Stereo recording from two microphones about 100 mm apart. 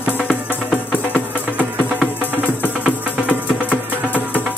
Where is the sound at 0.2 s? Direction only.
20° left (ahead or behind).